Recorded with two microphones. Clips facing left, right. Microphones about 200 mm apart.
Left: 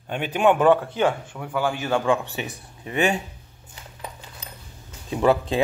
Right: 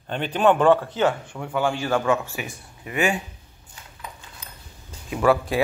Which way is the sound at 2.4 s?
30° left (ahead or behind).